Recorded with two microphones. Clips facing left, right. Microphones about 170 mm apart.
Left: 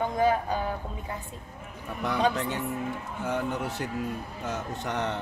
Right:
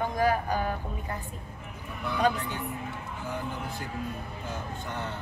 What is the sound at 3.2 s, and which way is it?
Speech, 75° left (ahead or behind).